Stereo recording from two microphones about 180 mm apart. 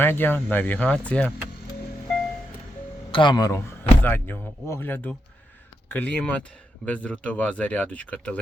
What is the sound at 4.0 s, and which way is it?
Speech, 10° left (ahead or behind).